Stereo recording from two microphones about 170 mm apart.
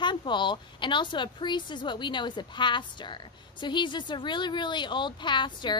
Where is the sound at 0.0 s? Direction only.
25° left (ahead or behind).